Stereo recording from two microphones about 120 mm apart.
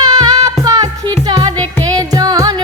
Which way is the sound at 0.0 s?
35° right (ahead or behind).